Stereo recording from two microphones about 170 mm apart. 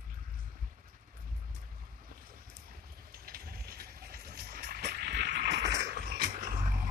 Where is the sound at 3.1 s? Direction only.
60° right (ahead or behind).